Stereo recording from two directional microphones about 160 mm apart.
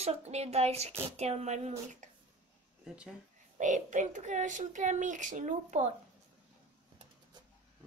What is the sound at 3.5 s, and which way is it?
A woman's voice, 50° right (ahead or behind).